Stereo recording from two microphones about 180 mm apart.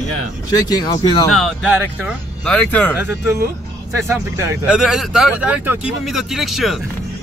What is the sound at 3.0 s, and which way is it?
Speech, 10° right (ahead or behind).